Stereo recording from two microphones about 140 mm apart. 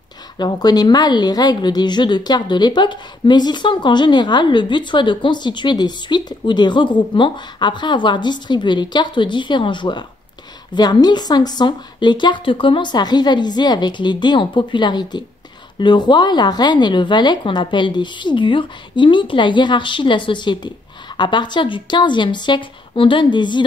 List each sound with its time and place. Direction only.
0.4 s a woman's voice: 30° left (ahead or behind)